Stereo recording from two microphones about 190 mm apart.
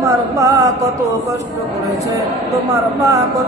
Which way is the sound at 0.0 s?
15° right (ahead or behind).